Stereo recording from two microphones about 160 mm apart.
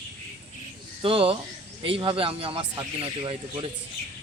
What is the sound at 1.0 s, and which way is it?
Speech, 35° right (ahead or behind).